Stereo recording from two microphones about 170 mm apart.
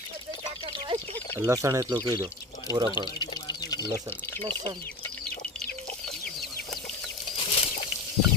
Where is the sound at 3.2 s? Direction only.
25° left (ahead or behind).